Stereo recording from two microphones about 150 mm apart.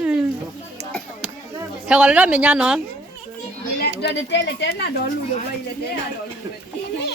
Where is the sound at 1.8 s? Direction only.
5° right (ahead or behind).